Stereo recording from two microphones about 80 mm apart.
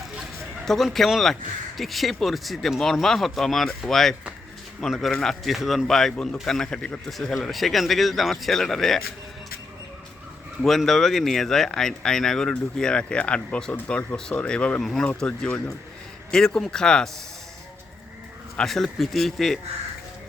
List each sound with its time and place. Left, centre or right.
0.6 s speech: centre
10.6 s speech: centre
15.2 s speech: centre
18.5 s speech: centre